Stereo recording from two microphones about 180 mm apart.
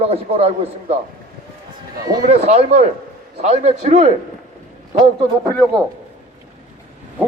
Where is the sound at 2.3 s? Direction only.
40° right (ahead or behind).